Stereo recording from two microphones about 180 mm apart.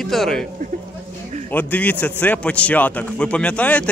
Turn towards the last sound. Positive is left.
turn(degrees=5)  # may be behind; listen again after turning